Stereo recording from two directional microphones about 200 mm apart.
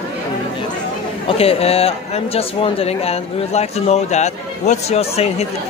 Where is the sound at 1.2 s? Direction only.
30° left (ahead or behind).